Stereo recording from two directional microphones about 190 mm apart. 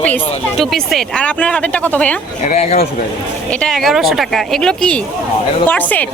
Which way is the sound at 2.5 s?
35° left (ahead or behind).